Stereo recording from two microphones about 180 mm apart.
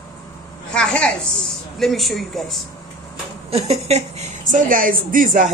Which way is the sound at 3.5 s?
35° right (ahead or behind).